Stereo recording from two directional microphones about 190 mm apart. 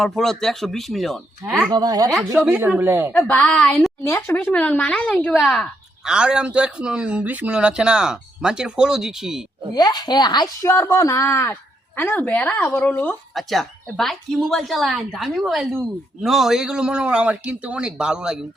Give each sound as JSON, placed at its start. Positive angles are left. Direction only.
{"t": 0.0, "sound": "speech", "side_deg": 0}
{"t": 1.7, "sound": "speech", "side_deg": -20}
{"t": 3.1, "sound": "speech", "side_deg": 5}
{"t": 4.0, "sound": "a woman's voice", "side_deg": 15}
{"t": 9.7, "sound": "a woman's voice", "side_deg": 20}